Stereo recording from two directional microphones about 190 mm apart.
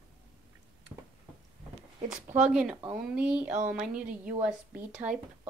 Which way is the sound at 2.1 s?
5° right (ahead or behind).